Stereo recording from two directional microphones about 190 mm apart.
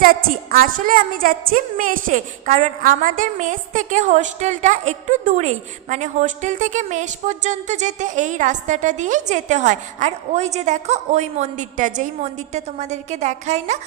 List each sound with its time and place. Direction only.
0.0 s a woman's voice: 50° right (ahead or behind)